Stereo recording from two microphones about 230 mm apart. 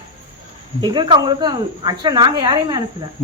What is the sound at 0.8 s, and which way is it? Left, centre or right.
A woman's voice, centre.